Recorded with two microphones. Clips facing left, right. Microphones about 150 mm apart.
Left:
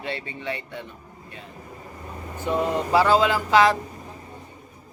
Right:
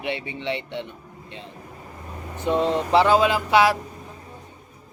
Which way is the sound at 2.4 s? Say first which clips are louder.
Right 2 dB; 20° right (ahead or behind).